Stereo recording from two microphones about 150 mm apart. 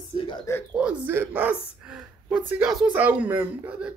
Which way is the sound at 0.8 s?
15° right (ahead or behind).